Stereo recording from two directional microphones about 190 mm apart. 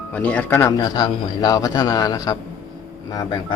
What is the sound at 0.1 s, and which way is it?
Speech, 5° left (ahead or behind).